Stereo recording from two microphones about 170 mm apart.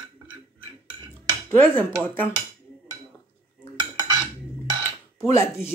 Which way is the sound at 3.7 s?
25° right (ahead or behind).